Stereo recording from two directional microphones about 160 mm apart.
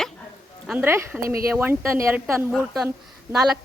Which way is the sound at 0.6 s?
10° right (ahead or behind).